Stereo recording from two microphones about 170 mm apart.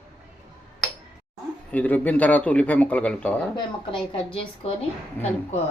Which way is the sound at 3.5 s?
30° left (ahead or behind).